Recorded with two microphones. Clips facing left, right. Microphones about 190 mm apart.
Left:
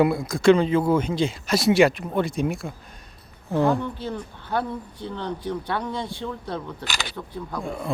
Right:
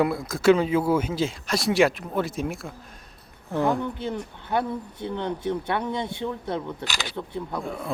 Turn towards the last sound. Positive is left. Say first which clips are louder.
# left 2 dB
turn(degrees=0)  # may be behind; listen again after turning